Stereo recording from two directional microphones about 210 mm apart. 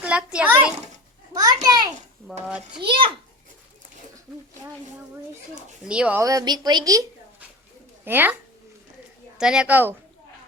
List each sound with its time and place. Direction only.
0.0 s a child's voice: 5° right (ahead or behind)
1.3 s a child's voice: 15° right (ahead or behind)
2.5 s a child's voice: 5° right (ahead or behind)
2.8 s a child's voice: 25° right (ahead or behind)
5.8 s speech: 5° right (ahead or behind)
9.4 s a child's voice: 5° right (ahead or behind)